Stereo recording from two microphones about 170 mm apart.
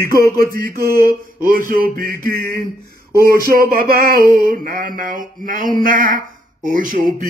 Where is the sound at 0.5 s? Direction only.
60° right (ahead or behind).